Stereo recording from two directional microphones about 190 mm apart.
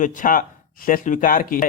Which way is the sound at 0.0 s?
45° left (ahead or behind).